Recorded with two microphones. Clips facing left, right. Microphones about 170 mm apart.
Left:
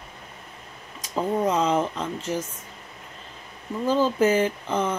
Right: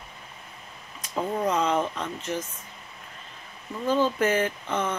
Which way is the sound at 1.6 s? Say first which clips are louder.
Left 2 dB; 25° left (ahead or behind).